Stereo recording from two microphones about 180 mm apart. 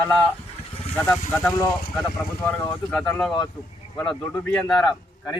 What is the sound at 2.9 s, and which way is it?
A man's voice, centre (ahead or behind).